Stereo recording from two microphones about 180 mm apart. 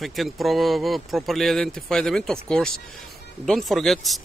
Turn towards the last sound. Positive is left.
turn(degrees=0)  # may be behind; listen again after turning